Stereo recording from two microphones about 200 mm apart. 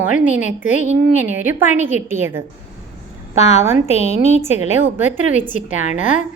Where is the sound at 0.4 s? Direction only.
40° left (ahead or behind).